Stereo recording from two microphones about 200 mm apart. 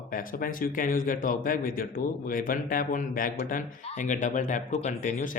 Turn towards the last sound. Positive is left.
turn(degrees=40)  # may be behind; listen again after turning